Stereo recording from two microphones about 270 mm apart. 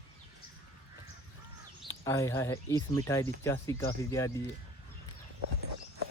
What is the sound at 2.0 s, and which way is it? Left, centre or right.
Speech, centre.